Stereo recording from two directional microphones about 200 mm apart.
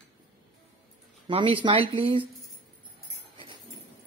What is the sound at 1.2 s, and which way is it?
Speech, 25° right (ahead or behind).